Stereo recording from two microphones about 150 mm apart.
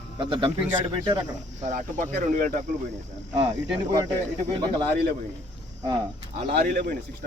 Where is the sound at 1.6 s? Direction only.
60° right (ahead or behind).